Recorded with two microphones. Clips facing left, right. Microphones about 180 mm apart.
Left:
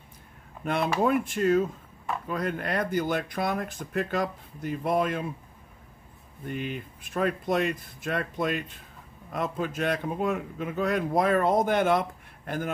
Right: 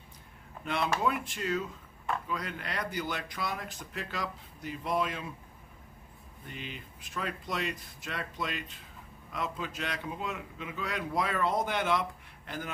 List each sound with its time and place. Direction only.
1.0 s a man's voice: 50° left (ahead or behind)
6.4 s a man's voice: 50° left (ahead or behind)